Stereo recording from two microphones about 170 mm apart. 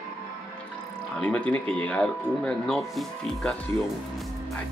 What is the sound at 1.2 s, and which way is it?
Speech, 5° left (ahead or behind).